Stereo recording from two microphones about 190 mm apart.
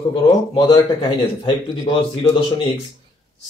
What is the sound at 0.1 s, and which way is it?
A man's voice, 25° left (ahead or behind).